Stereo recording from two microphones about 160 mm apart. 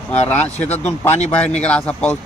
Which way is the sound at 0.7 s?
45° left (ahead or behind).